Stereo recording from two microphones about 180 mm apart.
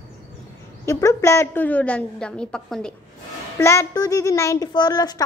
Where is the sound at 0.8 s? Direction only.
15° left (ahead or behind).